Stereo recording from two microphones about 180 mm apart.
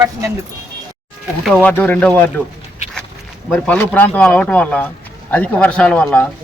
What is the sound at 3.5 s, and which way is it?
Speech, 10° left (ahead or behind).